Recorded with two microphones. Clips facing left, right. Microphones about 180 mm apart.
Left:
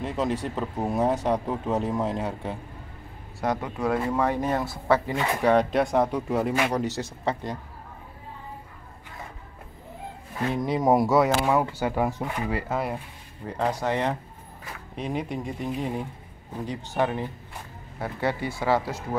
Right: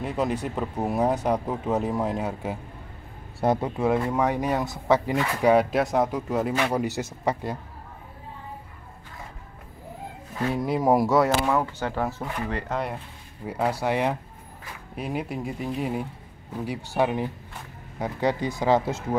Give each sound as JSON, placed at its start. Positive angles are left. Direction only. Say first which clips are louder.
{"t": 0.0, "sound": "speech", "louder": "right 1 dB", "side_deg": 0}
{"t": 3.3, "sound": "speech", "louder": "right 4 dB", "side_deg": -30}
{"t": 4.1, "sound": "speech", "louder": "right 1 dB", "side_deg": -15}
{"t": 5.1, "sound": "speech", "louder": "right 1 dB", "side_deg": 20}
{"t": 5.4, "sound": "speech", "louder": "right 1 dB", "side_deg": -10}
{"t": 10.5, "sound": "speech", "louder": "even", "side_deg": -5}
{"t": 11.4, "sound": "speech", "louder": "left 1 dB", "side_deg": 10}
{"t": 13.5, "sound": "speech", "louder": "right 1 dB", "side_deg": -10}